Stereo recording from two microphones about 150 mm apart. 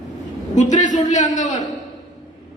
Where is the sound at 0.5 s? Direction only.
55° left (ahead or behind).